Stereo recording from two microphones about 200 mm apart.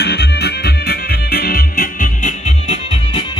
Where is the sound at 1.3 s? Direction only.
45° left (ahead or behind).